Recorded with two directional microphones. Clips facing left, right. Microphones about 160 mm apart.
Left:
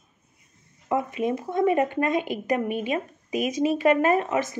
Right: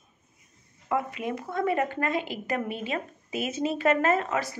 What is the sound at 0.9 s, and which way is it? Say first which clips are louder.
Speech: left 4 dB; 20° left (ahead or behind).